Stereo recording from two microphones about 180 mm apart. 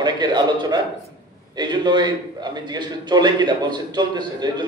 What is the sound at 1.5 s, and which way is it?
A man's voice, 25° right (ahead or behind).